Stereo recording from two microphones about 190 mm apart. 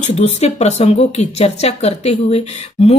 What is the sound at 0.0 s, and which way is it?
A woman's voice, 35° left (ahead or behind).